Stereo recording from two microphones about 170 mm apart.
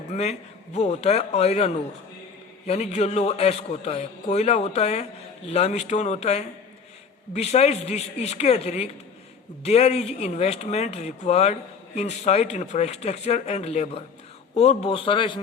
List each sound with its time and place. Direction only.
0.1 s a man's voice: 40° left (ahead or behind)